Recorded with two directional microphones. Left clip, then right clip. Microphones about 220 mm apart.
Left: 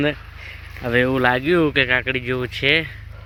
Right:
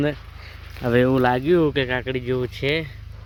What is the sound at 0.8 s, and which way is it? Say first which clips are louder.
Speech: left 1 dB; 25° right (ahead or behind).